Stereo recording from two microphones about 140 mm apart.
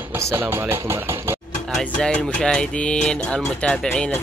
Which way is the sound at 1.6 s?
5° left (ahead or behind).